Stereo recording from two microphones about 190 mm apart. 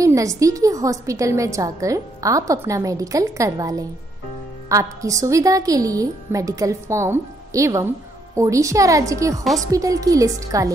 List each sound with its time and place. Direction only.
0.0 s a woman's voice: 15° right (ahead or behind)